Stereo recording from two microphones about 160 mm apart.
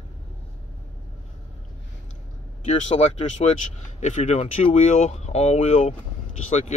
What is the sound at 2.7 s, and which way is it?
Speech, 45° left (ahead or behind).